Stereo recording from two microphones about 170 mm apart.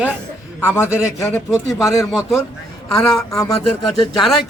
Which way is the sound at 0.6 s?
15° left (ahead or behind).